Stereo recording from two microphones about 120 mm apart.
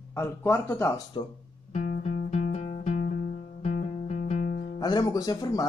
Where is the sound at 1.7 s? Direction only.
60° left (ahead or behind).